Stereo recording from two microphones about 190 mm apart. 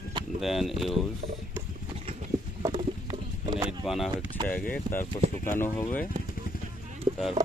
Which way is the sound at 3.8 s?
Centre (ahead or behind).